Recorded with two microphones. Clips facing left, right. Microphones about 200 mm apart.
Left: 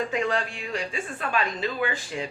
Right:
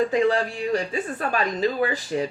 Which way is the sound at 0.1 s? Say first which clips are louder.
Right 6 dB; 35° right (ahead or behind).